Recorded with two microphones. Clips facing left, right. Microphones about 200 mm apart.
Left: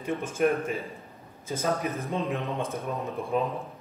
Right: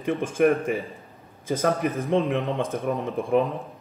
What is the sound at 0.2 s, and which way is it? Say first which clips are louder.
Speech: right 5 dB; 50° right (ahead or behind).